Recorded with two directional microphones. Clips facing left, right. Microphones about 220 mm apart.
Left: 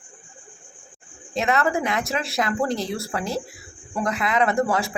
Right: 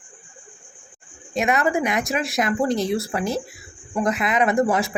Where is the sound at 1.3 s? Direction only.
15° right (ahead or behind).